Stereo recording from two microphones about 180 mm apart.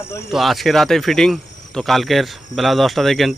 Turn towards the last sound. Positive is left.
turn(degrees=0)  # may be behind; listen again after turning